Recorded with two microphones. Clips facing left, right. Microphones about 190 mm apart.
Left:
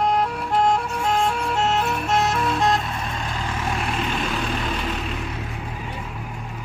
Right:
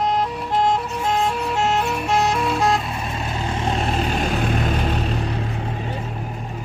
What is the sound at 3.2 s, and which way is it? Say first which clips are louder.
Vehicle: right 3 dB; 25° right (ahead or behind).